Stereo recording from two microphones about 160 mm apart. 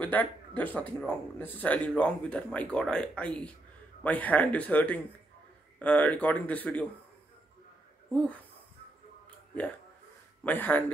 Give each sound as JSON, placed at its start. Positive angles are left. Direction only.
{"t": 0.0, "sound": "speech", "side_deg": 10}
{"t": 10.4, "sound": "speech", "side_deg": 10}